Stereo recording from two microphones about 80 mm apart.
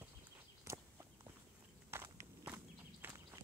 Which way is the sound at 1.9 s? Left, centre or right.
Right.